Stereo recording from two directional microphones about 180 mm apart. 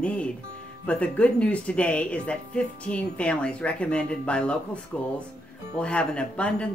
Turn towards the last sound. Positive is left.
turn(degrees=5)  # may be behind; listen again after turning